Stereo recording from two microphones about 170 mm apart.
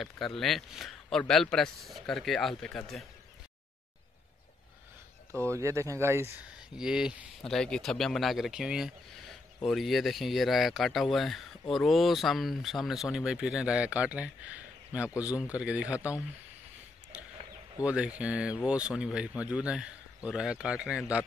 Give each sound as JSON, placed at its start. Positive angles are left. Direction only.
{"t": 0.0, "sound": "a man's voice", "side_deg": 0}
{"t": 5.3, "sound": "speech", "side_deg": 10}
{"t": 5.6, "sound": "speech", "side_deg": -15}
{"t": 6.8, "sound": "a man's voice", "side_deg": -5}
{"t": 15.5, "sound": "speech", "side_deg": -5}
{"t": 17.8, "sound": "a man's voice", "side_deg": -5}